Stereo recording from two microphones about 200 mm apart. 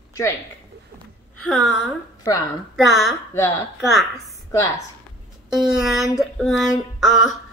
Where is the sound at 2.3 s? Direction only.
15° left (ahead or behind).